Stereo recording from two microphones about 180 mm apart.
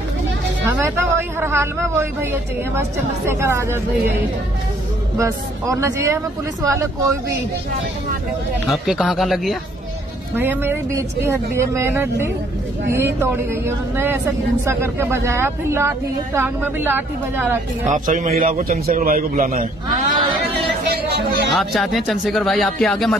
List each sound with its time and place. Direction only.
0.7 s speech: 15° right (ahead or behind)
3.3 s speech: 15° right (ahead or behind)
5.1 s speech: 15° right (ahead or behind)
8.6 s speech: centre (ahead or behind)
10.3 s speech: 10° right (ahead or behind)
17.8 s a man's voice: 45° right (ahead or behind)
21.5 s speech: centre (ahead or behind)